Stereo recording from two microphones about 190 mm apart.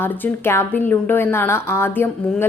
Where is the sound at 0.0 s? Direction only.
10° left (ahead or behind).